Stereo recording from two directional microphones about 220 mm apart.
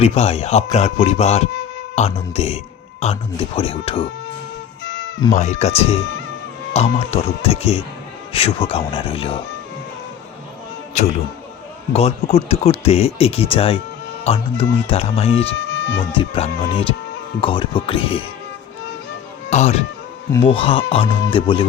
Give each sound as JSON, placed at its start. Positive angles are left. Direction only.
{"t": 0.0, "sound": "speech", "side_deg": 30}
{"t": 4.8, "sound": "music", "side_deg": 55}
{"t": 5.3, "sound": "speech", "side_deg": 30}
{"t": 11.0, "sound": "a man's voice", "side_deg": 30}
{"t": 15.7, "sound": "music", "side_deg": 55}
{"t": 16.1, "sound": "speech", "side_deg": 25}
{"t": 19.5, "sound": "speech", "side_deg": 30}